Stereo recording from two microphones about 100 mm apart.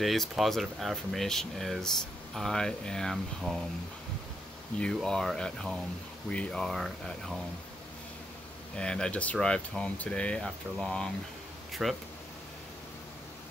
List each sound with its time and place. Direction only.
0.0 s speech: centre (ahead or behind)
4.7 s speech: 5° left (ahead or behind)
8.7 s speech: 10° left (ahead or behind)